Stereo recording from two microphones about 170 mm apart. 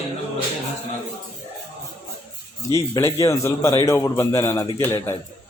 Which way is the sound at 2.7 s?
15° left (ahead or behind).